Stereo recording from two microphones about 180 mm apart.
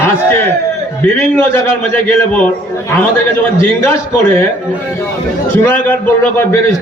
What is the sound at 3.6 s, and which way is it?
Speech, 15° left (ahead or behind).